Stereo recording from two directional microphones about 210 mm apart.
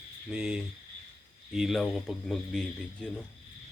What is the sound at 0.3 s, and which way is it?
Speech, 5° right (ahead or behind).